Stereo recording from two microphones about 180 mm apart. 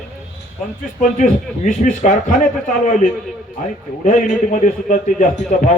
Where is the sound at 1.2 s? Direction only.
45° left (ahead or behind).